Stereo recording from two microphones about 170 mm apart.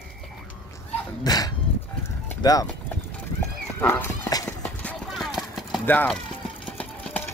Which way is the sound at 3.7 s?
10° left (ahead or behind).